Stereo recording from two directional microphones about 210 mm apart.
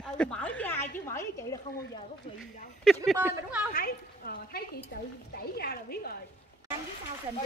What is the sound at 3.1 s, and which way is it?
Speech, 5° right (ahead or behind).